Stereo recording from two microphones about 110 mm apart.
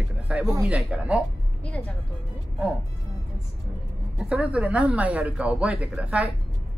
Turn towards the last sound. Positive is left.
turn(degrees=-10)  # may be behind; listen again after turning